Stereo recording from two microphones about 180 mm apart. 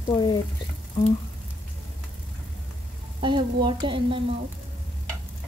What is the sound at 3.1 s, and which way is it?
Frying, 25° right (ahead or behind).